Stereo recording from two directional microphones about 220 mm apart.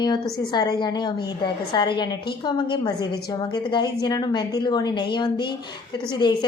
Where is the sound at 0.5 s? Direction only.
20° left (ahead or behind).